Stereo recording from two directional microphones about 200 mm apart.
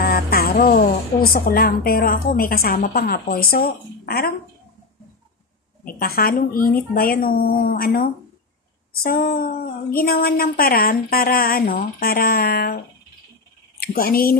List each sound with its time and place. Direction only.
0.0 s a woman's voice: 50° left (ahead or behind)
5.9 s a woman's voice: 50° left (ahead or behind)